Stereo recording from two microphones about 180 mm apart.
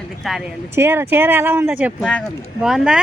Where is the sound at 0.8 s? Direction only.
15° right (ahead or behind).